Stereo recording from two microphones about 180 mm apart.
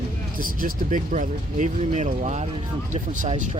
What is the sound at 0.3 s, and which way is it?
Speech, 50° right (ahead or behind).